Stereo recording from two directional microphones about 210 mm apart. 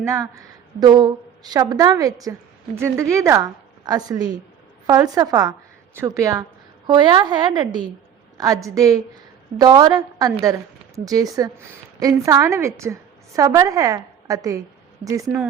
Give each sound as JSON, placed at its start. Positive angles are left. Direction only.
{"t": 0.0, "sound": "a woman's voice", "side_deg": -15}